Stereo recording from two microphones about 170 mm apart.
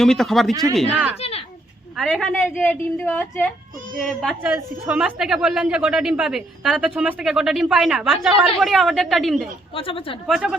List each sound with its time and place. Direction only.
0.0 s a woman's voice: centre (ahead or behind)
1.2 s a sound: 35° left (ahead or behind)
2.0 s a woman's voice: centre (ahead or behind)
9.7 s a woman's voice: 30° left (ahead or behind)
10.2 s a woman's voice: centre (ahead or behind)